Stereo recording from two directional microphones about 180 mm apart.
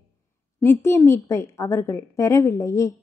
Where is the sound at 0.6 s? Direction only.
15° left (ahead or behind).